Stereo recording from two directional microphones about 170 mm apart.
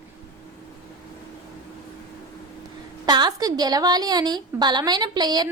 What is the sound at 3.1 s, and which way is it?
A woman's voice, 25° right (ahead or behind).